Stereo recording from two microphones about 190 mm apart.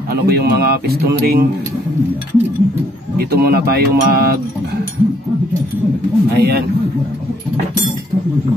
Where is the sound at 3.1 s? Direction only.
55° right (ahead or behind).